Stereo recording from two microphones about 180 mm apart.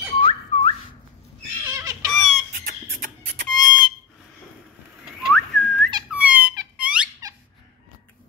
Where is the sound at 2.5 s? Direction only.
55° right (ahead or behind).